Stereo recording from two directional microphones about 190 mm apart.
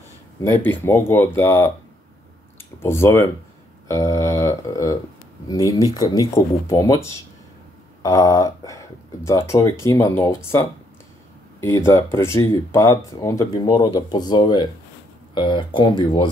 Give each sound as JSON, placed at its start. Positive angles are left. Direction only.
{"t": 0.4, "sound": "speech", "side_deg": 10}
{"t": 2.8, "sound": "speech", "side_deg": 15}